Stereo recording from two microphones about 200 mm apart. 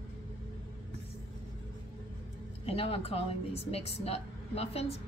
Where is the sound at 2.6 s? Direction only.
30° left (ahead or behind).